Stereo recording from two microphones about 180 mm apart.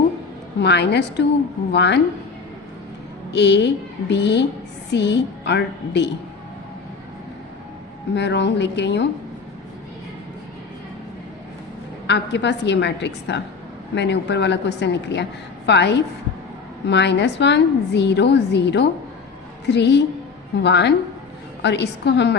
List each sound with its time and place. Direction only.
0.6 s a woman's voice: 70° left (ahead or behind)
3.3 s a woman's voice: 70° left (ahead or behind)
8.1 s a woman's voice: 75° left (ahead or behind)
12.0 s a woman's voice: 75° left (ahead or behind)